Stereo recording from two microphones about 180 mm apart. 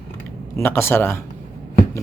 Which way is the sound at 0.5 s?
15° left (ahead or behind).